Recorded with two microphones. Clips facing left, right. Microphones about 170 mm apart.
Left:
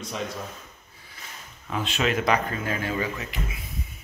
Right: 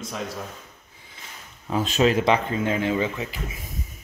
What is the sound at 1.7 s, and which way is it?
Speech, 35° right (ahead or behind).